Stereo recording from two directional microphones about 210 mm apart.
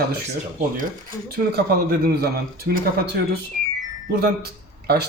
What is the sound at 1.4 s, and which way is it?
Speech, 45° right (ahead or behind).